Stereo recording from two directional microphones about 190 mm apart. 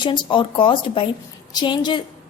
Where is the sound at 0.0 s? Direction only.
25° left (ahead or behind).